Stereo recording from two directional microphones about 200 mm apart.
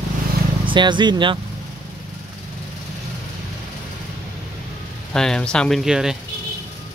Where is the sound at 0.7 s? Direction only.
25° right (ahead or behind).